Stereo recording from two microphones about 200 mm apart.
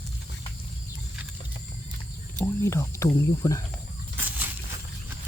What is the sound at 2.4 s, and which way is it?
Speech, 15° left (ahead or behind).